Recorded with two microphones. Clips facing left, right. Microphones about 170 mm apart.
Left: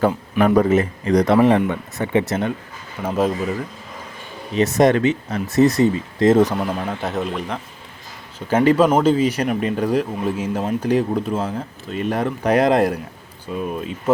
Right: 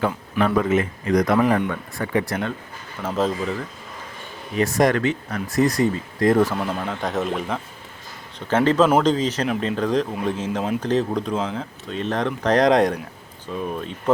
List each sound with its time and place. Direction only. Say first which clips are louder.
0.0 s speech: left 4 dB; 40° left (ahead or behind); by 2.5 s 20° left (ahead or behind)
3.0 s speech: left 3 dB; 10° left (ahead or behind)
4.5 s speech: left 3 dB; 25° left (ahead or behind)
6.6 s speech: left 2 dB; 5° left (ahead or behind)
8.4 s speech: left 2 dB; 10° left (ahead or behind)